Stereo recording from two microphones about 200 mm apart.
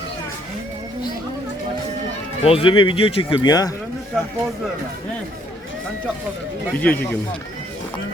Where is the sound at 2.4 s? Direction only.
30° left (ahead or behind).